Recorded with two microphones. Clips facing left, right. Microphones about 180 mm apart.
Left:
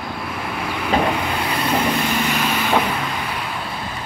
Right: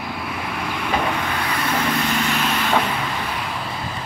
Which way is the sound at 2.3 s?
5° left (ahead or behind).